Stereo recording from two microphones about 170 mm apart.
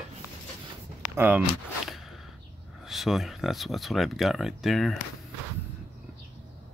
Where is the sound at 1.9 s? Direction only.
Centre (ahead or behind).